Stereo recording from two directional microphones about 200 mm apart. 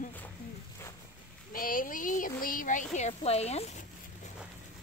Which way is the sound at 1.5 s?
45° left (ahead or behind).